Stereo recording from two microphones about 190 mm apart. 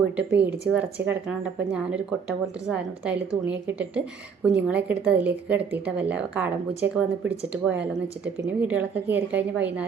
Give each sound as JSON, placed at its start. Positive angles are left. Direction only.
{"t": 0.2, "sound": "speech", "side_deg": -60}
{"t": 0.7, "sound": "a woman's voice", "side_deg": -10}
{"t": 2.6, "sound": "a woman's voice", "side_deg": -5}